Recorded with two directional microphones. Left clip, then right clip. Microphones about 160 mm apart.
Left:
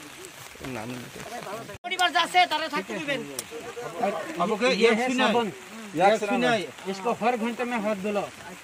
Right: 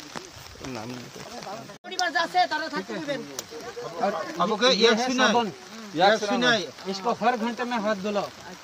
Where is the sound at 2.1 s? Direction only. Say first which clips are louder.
Even; 50° left (ahead or behind).